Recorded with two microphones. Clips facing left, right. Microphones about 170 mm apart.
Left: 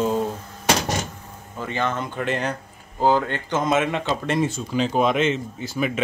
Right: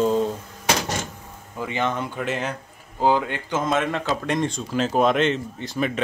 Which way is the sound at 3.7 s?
5° left (ahead or behind).